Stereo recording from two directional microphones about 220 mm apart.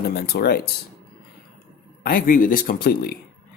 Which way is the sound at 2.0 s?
40° left (ahead or behind).